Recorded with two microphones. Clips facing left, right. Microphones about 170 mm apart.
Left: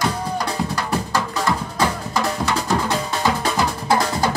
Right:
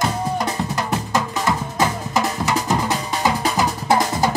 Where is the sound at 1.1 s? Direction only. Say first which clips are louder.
Right 2 dB; 20° right (ahead or behind).